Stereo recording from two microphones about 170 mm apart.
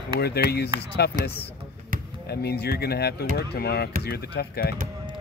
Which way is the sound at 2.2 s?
70° left (ahead or behind).